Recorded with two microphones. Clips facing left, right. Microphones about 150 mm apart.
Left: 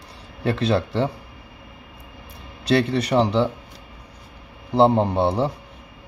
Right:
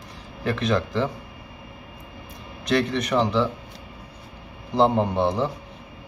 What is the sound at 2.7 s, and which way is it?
Speech, 30° left (ahead or behind).